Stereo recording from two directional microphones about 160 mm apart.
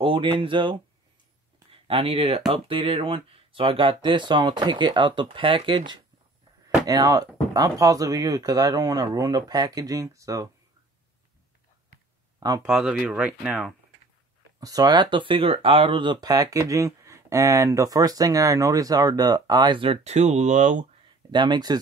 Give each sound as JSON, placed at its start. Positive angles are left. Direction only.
{"t": 0.0, "sound": "speech", "side_deg": -35}
{"t": 12.4, "sound": "speech", "side_deg": -25}
{"t": 12.6, "sound": "speech", "side_deg": -5}
{"t": 14.6, "sound": "speech", "side_deg": -25}
{"t": 21.3, "sound": "speech", "side_deg": -30}